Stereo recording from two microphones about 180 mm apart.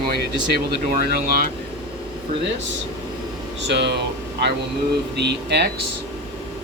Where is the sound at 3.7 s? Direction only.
75° right (ahead or behind).